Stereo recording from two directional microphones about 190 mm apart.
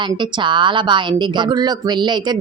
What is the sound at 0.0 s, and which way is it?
A woman's voice, 25° right (ahead or behind).